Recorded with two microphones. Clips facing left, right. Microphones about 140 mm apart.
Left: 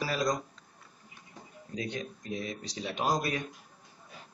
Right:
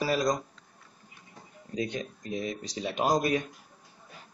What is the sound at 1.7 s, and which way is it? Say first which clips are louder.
Speech: right 4 dB; 20° right (ahead or behind).